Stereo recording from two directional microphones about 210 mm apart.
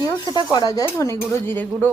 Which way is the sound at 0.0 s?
20° left (ahead or behind).